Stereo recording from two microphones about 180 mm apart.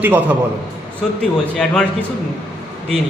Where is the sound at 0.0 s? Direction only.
10° right (ahead or behind).